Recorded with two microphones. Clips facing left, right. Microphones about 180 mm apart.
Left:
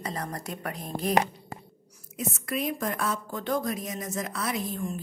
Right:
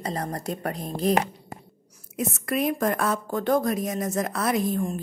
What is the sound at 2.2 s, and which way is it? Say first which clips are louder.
A woman's voice: right 5 dB; 55° right (ahead or behind).